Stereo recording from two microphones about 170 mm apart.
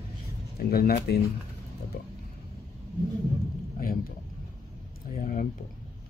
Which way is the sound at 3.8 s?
55° left (ahead or behind).